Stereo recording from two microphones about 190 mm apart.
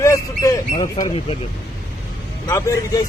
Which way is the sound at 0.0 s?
15° left (ahead or behind).